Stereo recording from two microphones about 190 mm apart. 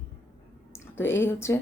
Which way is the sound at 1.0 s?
10° left (ahead or behind).